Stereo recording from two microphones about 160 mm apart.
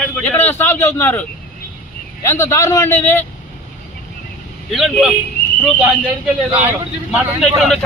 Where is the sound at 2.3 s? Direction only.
20° left (ahead or behind).